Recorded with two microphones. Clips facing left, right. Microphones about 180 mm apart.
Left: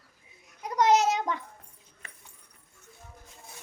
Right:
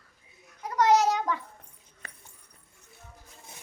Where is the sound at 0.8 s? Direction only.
20° left (ahead or behind).